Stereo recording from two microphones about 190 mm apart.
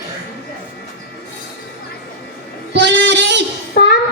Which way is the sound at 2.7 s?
65° right (ahead or behind).